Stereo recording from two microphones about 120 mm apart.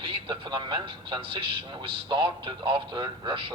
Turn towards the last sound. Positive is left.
turn(degrees=-45)  # may be behind; listen again after turning